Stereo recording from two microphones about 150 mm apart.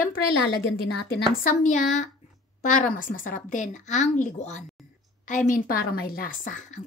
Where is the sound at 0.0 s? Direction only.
90° left.